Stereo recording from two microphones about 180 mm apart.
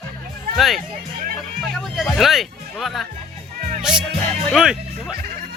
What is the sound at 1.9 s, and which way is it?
Speech, centre (ahead or behind).